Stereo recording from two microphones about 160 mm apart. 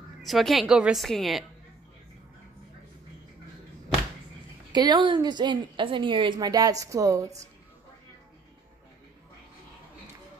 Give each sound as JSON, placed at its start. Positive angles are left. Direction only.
{"t": 0.2, "sound": "a woman's voice", "side_deg": 0}
{"t": 4.7, "sound": "a woman's voice", "side_deg": -25}